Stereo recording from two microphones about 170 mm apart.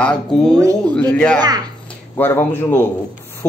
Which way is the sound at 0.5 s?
20° right (ahead or behind).